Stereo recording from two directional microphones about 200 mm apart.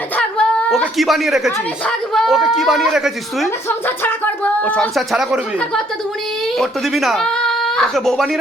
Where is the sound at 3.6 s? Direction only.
10° left (ahead or behind).